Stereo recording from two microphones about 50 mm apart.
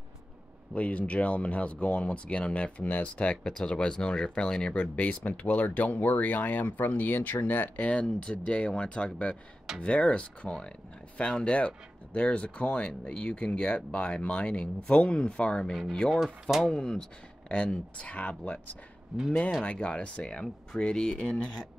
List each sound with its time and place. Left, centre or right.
0.7 s speech: left
3.4 s speech: centre
4.7 s speech: left
7.8 s speech: centre
17.5 s speech: left
19.1 s speech: centre
19.6 s speech: left